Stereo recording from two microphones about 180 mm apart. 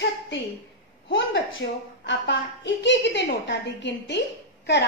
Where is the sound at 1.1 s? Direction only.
90° left.